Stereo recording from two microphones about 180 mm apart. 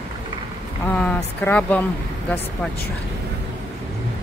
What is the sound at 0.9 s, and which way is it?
Speech, 10° left (ahead or behind).